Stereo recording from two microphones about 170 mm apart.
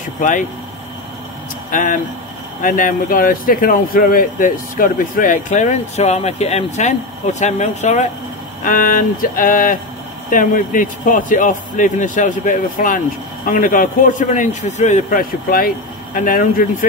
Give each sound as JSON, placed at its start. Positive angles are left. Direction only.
{"t": 0.2, "sound": "speech", "side_deg": 50}
{"t": 1.7, "sound": "speech", "side_deg": 50}
{"t": 8.6, "sound": "speech", "side_deg": 55}